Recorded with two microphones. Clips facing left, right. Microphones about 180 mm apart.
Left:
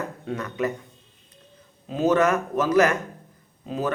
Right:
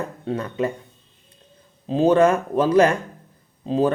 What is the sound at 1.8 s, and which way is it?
Speech, 30° right (ahead or behind).